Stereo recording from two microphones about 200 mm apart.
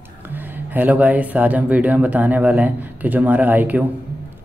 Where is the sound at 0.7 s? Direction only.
10° right (ahead or behind).